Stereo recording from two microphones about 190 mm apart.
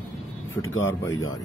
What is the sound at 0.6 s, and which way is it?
Speech, 90° left.